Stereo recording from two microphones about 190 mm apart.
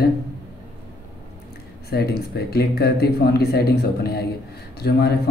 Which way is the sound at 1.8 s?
55° left (ahead or behind).